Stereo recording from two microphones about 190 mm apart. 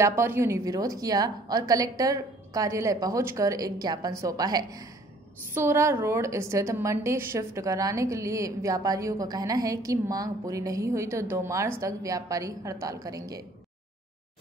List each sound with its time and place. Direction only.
0.0 s a woman's voice: 15° right (ahead or behind)